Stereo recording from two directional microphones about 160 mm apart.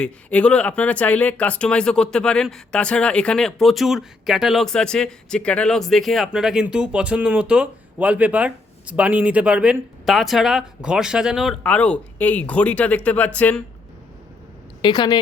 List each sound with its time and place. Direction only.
0.0 s speech: 5° left (ahead or behind)
11.6 s speech: 10° left (ahead or behind)
14.8 s a woman's voice: 30° left (ahead or behind)